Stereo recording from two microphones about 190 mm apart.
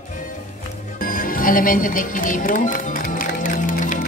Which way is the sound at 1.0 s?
50° left (ahead or behind).